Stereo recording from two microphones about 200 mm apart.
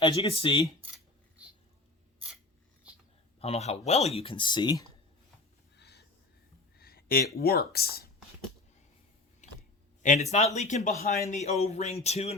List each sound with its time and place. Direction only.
0.0 s speech: 25° left (ahead or behind)
3.4 s speech: 30° left (ahead or behind)
5.7 s a sound: 55° left (ahead or behind)
7.3 s speech: 50° left (ahead or behind)
10.0 s a man's voice: 35° left (ahead or behind)